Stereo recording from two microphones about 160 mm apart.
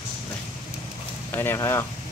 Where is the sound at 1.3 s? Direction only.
15° left (ahead or behind).